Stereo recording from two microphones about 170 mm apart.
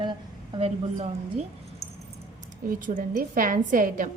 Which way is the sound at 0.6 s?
40° right (ahead or behind).